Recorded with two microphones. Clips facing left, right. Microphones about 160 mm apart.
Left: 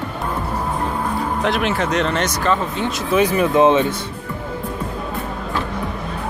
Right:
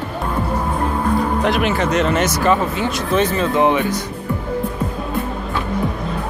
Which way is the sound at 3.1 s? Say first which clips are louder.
Left 2 dB; 10° left (ahead or behind).